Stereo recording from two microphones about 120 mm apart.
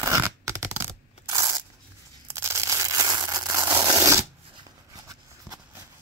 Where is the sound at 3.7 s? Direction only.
30° right (ahead or behind).